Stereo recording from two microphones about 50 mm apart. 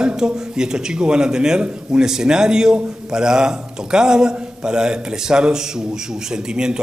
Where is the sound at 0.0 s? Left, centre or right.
Centre.